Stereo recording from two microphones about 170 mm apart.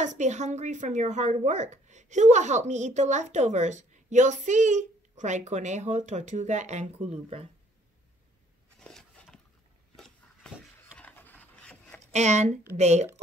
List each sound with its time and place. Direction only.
0.0 s a woman's voice: 45° right (ahead or behind)
8.7 s a sound: 5° left (ahead or behind)
11.0 s wood: 10° left (ahead or behind)
12.1 s a woman's voice: 40° right (ahead or behind)